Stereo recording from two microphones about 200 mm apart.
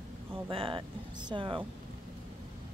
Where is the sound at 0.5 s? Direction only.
25° right (ahead or behind).